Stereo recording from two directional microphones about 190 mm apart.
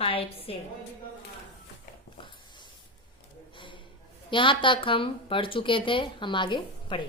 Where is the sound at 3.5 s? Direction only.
25° left (ahead or behind).